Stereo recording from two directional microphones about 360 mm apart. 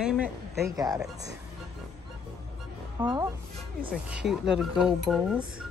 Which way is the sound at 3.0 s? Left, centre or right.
Centre.